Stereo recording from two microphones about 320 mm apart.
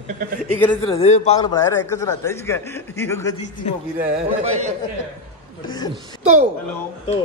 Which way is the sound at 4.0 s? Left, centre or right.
Right.